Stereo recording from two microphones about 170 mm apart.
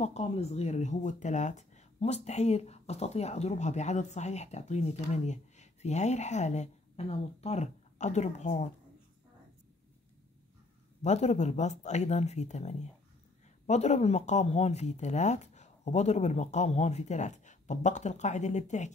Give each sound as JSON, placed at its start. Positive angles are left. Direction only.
{"t": 0.0, "sound": "speech", "side_deg": 40}
{"t": 11.0, "sound": "speech", "side_deg": 40}